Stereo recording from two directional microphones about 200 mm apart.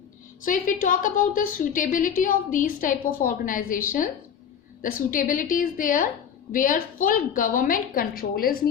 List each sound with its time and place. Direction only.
0.4 s a woman's voice: 40° left (ahead or behind)
4.8 s a woman's voice: 45° left (ahead or behind)